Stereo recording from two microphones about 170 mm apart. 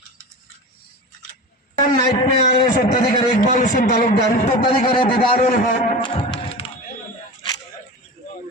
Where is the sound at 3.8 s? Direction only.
60° left (ahead or behind).